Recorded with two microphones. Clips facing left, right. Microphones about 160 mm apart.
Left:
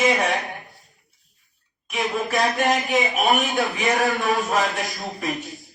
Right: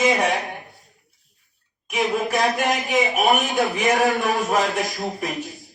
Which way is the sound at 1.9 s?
20° right (ahead or behind).